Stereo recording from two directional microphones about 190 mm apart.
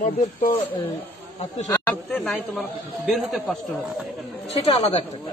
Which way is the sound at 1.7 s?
10° left (ahead or behind).